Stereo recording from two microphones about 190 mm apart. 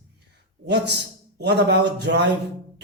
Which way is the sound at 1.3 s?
60° right (ahead or behind).